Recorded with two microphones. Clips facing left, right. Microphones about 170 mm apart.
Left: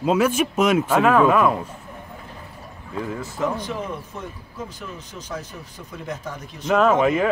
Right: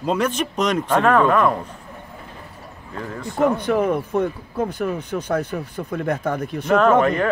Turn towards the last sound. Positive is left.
turn(degrees=5)  # may be behind; listen again after turning